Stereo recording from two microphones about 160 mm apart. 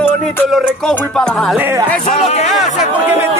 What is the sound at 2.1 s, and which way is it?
Speech, 40° left (ahead or behind).